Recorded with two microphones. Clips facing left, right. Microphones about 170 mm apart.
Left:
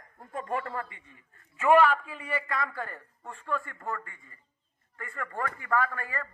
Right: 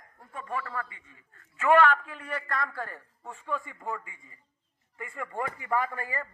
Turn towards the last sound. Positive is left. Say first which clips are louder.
# left 1 dB
turn(degrees=-20)  # may be behind; listen again after turning